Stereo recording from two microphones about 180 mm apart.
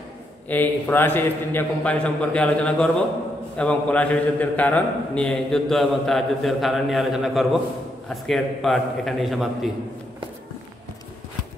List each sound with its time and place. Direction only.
0.5 s a man's voice: 10° left (ahead or behind)